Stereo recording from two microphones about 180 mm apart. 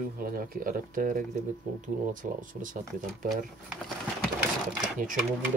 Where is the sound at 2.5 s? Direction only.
45° right (ahead or behind).